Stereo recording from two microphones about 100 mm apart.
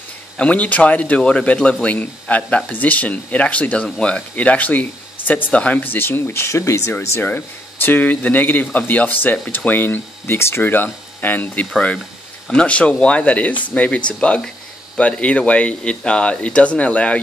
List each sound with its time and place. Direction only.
0.4 s a man's voice: 15° left (ahead or behind)